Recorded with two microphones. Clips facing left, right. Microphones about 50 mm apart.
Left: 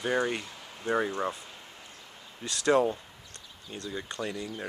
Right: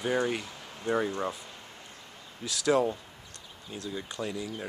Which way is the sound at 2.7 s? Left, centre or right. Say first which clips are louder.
Left 2 dB; centre.